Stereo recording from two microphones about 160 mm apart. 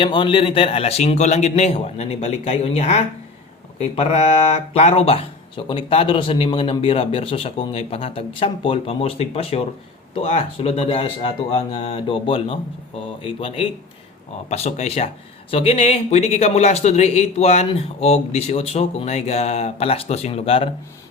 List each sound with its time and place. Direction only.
0.0 s speech: 30° left (ahead or behind)